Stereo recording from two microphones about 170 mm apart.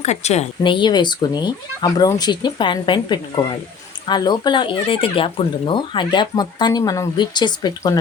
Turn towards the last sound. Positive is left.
turn(degrees=20)  # may be behind; listen again after turning